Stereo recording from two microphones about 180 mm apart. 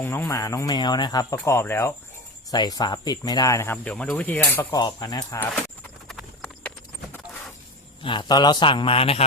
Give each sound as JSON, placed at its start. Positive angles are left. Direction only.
{"t": 0.0, "sound": "speech", "side_deg": 10}
{"t": 4.5, "sound": "speech", "side_deg": 20}
{"t": 6.1, "sound": "clip-clop", "side_deg": 5}
{"t": 8.0, "sound": "speech", "side_deg": 25}